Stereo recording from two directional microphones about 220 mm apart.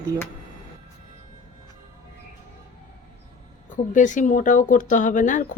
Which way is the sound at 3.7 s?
35° left (ahead or behind).